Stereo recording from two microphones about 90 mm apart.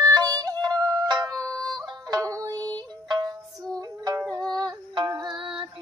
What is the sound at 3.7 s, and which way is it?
Music, 45° right (ahead or behind).